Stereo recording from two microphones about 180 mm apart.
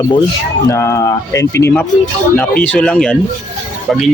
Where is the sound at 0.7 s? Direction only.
15° left (ahead or behind).